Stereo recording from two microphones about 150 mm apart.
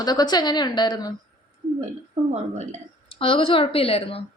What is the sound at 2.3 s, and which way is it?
Speech, 50° right (ahead or behind).